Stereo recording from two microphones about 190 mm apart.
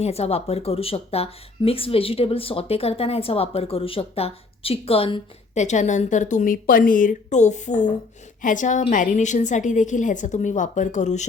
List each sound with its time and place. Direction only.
0.0 s a woman's voice: 35° left (ahead or behind)